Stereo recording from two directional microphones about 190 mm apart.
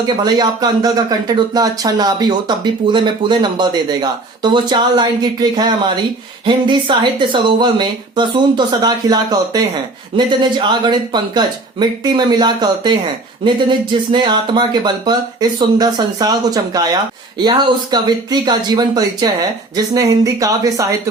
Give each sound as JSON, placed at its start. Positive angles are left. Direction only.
{"t": 0.3, "sound": "speech", "side_deg": -20}